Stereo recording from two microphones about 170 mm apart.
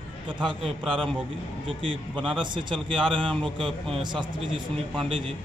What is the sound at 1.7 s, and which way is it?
Speech, 30° right (ahead or behind).